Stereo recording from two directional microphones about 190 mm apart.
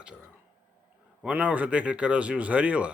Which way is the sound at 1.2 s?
5° right (ahead or behind).